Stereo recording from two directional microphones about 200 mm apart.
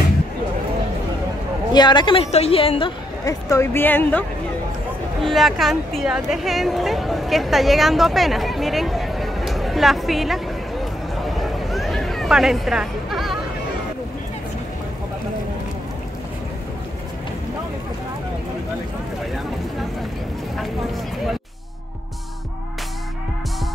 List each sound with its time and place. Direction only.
1.7 s a woman's voice: 20° left (ahead or behind)
3.3 s a woman's voice: 15° left (ahead or behind)
5.2 s speech: centre (ahead or behind)
11.2 s a sound: centre (ahead or behind)